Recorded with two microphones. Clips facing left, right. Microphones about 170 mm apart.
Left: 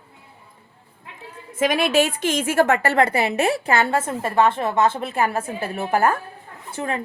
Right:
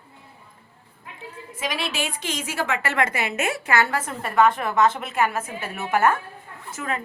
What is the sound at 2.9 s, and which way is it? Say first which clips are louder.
A woman's voice: left 6 dB; 35° left (ahead or behind).